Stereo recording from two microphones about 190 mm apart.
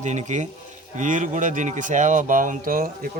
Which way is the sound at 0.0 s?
40° right (ahead or behind).